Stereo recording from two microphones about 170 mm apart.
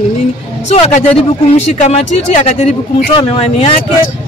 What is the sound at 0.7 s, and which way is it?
Speech, 40° left (ahead or behind).